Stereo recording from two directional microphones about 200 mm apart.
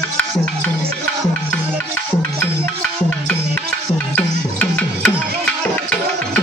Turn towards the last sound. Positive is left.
turn(degrees=10)  # may be behind; listen again after turning